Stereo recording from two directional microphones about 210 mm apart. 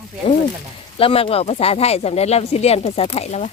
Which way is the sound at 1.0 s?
25° left (ahead or behind).